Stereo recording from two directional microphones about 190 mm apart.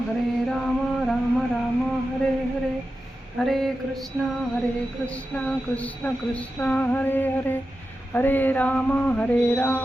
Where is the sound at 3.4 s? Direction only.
Centre (ahead or behind).